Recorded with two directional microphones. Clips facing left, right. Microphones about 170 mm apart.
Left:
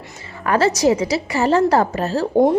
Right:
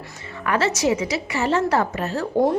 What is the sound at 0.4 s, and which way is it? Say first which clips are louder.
A woman's voice: left 5 dB; 35° left (ahead or behind).